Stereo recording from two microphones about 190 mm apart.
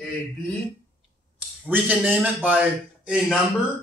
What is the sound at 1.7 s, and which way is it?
A man's voice, 10° right (ahead or behind).